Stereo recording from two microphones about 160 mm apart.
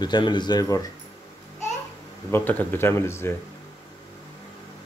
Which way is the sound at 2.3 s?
10° left (ahead or behind).